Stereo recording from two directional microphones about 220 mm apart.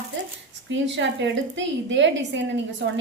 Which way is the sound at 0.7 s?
55° right (ahead or behind).